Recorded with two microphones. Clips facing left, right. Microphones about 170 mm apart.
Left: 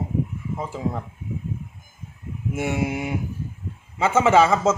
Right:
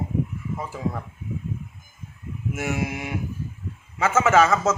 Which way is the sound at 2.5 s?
30° left (ahead or behind).